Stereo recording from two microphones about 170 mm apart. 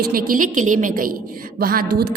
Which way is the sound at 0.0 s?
60° right (ahead or behind).